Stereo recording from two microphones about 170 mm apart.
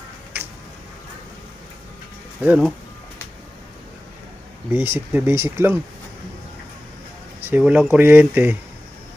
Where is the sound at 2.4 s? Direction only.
10° right (ahead or behind).